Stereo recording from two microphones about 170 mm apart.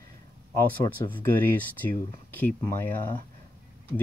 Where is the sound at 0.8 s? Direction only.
25° left (ahead or behind).